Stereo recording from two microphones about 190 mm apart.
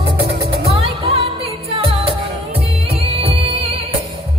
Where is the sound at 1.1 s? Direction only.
30° right (ahead or behind).